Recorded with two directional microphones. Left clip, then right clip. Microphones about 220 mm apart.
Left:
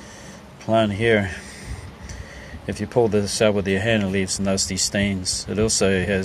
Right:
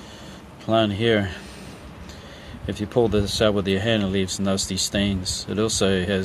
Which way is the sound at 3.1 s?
30° left (ahead or behind).